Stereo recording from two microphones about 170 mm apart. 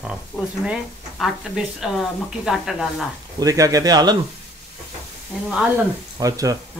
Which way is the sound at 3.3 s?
20° right (ahead or behind).